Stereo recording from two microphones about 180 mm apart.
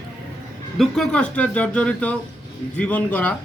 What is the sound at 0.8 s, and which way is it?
Speech, 5° left (ahead or behind).